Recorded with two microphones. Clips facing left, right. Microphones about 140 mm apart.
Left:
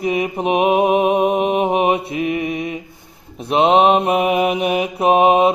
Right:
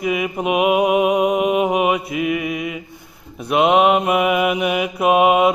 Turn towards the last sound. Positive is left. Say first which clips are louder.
# left 1 dB
turn(degrees=35)  # may be behind; listen again after turning